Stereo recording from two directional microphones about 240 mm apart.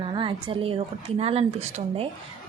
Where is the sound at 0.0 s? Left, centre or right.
Right.